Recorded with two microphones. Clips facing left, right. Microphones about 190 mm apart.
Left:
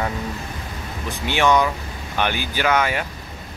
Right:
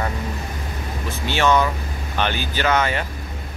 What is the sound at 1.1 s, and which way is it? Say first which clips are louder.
Speech: left 1 dB; 15° left (ahead or behind).